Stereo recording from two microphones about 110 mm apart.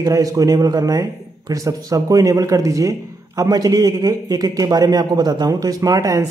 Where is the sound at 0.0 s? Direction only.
30° right (ahead or behind).